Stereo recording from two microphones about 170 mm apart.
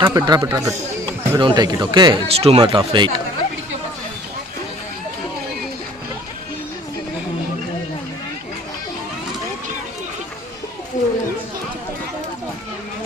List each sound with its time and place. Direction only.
0.0 s speech: 25° right (ahead or behind)
11.0 s children playing: 45° left (ahead or behind)